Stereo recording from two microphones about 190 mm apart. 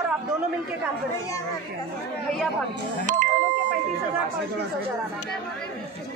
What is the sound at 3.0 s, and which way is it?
Speech, 40° right (ahead or behind).